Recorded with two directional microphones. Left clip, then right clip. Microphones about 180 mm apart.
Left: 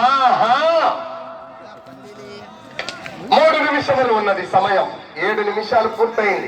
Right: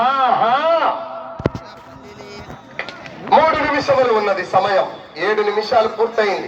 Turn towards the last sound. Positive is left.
turn(degrees=-5)  # may be behind; listen again after turning